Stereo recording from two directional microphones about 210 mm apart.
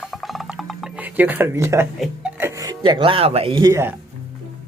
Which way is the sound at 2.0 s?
10° right (ahead or behind).